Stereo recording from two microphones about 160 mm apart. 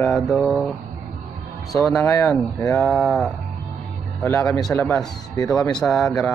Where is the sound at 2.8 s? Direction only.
5° left (ahead or behind).